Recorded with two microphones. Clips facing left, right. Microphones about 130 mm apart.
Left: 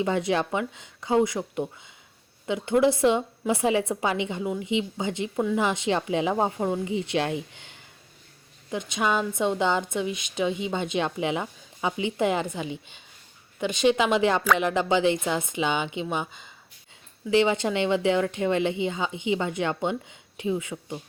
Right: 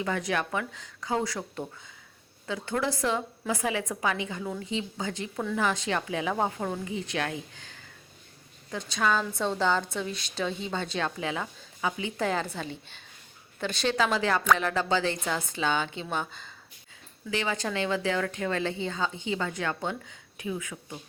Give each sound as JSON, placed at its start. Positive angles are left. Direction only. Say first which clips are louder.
{"t": 0.0, "sound": "a woman's voice", "louder": "left 5 dB", "side_deg": 25}